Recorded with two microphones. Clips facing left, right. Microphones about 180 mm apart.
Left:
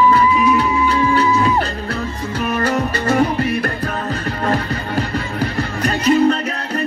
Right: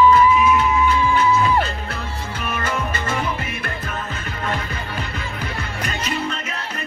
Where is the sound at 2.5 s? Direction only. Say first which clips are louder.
Left 6 dB; 35° left (ahead or behind).